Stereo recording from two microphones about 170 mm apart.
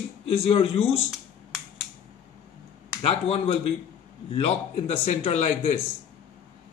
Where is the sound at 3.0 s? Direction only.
35° left (ahead or behind).